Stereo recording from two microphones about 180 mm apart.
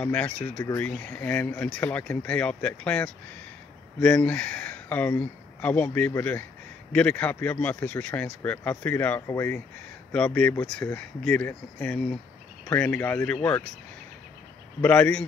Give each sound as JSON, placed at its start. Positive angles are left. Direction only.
{"t": 0.0, "sound": "speech", "side_deg": 10}
{"t": 14.8, "sound": "speech", "side_deg": 5}